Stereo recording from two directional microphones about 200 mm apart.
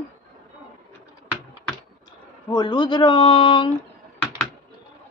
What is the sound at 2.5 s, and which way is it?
Speech, 20° left (ahead or behind).